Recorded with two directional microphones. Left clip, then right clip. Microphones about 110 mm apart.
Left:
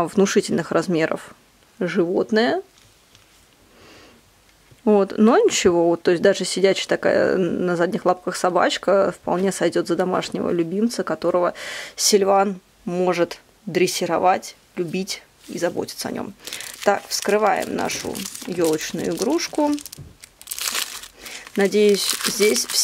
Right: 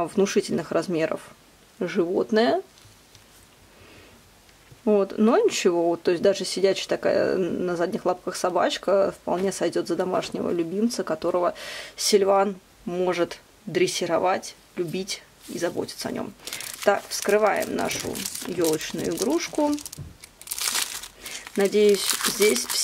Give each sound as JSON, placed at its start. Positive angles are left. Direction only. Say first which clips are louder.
{"t": 0.0, "sound": "speech", "louder": "left 4 dB", "side_deg": 40}
{"t": 4.8, "sound": "speech", "louder": "left 4 dB", "side_deg": 40}
{"t": 19.5, "sound": "speech", "louder": "left 3 dB", "side_deg": 10}
{"t": 20.4, "sound": "crumpling", "louder": "left 2 dB", "side_deg": 5}
{"t": 21.7, "sound": "speech", "louder": "left 2 dB", "side_deg": 35}
{"t": 22.0, "sound": "speech", "louder": "left 2 dB", "side_deg": 5}
{"t": 22.4, "sound": "speech", "louder": "left 3 dB", "side_deg": 35}